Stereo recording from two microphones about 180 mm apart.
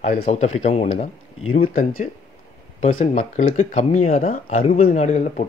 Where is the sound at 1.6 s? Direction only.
50° left (ahead or behind).